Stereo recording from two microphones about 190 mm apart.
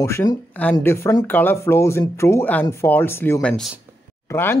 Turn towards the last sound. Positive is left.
turn(degrees=10)  # may be behind; listen again after turning